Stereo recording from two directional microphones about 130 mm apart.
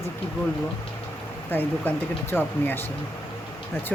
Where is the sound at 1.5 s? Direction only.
15° left (ahead or behind).